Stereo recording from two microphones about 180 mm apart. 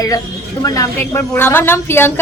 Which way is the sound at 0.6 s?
20° left (ahead or behind).